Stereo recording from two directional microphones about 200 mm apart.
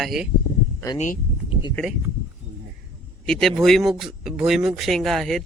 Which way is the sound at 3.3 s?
Centre (ahead or behind).